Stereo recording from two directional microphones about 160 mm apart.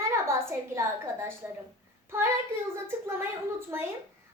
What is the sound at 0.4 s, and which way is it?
Speech, 15° right (ahead or behind).